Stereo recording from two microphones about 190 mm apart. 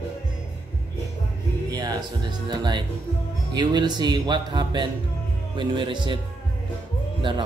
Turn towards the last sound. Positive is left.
turn(degrees=-25)  # may be behind; listen again after turning